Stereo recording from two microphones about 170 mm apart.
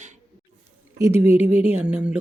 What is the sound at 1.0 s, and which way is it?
Speech, 15° right (ahead or behind).